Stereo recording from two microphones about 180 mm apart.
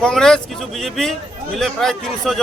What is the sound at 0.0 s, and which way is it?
Speech, 5° left (ahead or behind).